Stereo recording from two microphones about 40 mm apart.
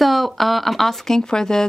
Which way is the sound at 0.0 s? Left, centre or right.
Centre.